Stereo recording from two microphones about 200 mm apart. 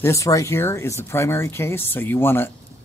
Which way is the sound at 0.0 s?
15° left (ahead or behind).